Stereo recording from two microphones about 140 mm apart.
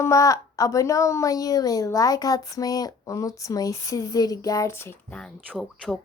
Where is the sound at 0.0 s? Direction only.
20° left (ahead or behind).